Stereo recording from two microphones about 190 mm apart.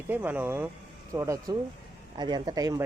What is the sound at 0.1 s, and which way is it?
Speech, 10° right (ahead or behind).